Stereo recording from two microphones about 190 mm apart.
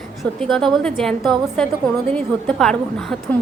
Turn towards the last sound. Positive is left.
turn(degrees=0)  # may be behind; listen again after turning